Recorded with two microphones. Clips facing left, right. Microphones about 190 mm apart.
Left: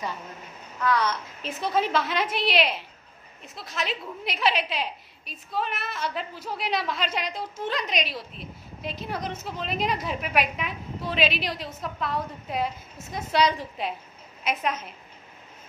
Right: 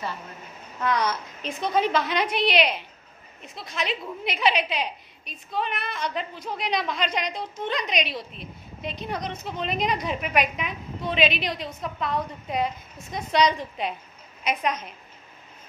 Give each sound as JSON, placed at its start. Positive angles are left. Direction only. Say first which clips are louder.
{"t": 0.8, "sound": "a child's voice", "louder": "even", "side_deg": -15}
{"t": 1.4, "sound": "a woman's voice", "louder": "right 2 dB", "side_deg": 5}